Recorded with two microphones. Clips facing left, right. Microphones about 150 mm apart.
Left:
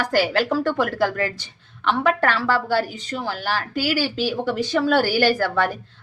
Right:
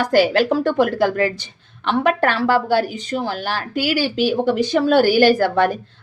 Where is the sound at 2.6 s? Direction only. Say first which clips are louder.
Right 4 dB; 20° right (ahead or behind).